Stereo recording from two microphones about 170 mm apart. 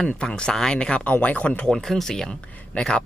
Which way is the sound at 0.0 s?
5° left (ahead or behind).